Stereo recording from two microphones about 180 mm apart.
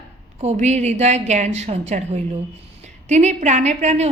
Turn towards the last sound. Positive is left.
turn(degrees=-40)  # may be behind; listen again after turning